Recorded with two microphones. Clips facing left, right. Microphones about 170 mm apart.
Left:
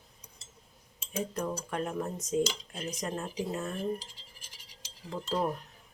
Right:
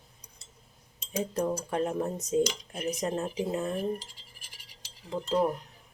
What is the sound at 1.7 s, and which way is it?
Cutlery, 30° right (ahead or behind).